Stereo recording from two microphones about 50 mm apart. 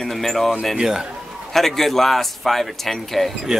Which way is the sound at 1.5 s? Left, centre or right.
Centre.